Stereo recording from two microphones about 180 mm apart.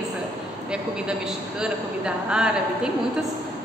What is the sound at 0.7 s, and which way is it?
A woman's voice, 5° right (ahead or behind).